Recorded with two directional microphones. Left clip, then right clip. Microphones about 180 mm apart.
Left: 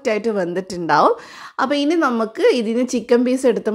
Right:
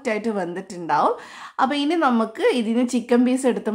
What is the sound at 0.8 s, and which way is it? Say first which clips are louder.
Speech: left 5 dB; 30° left (ahead or behind).